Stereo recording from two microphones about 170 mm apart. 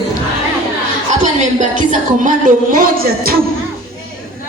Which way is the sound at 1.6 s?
45° right (ahead or behind).